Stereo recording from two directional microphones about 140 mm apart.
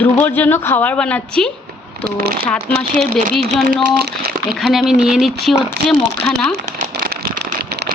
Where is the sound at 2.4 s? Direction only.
5° left (ahead or behind).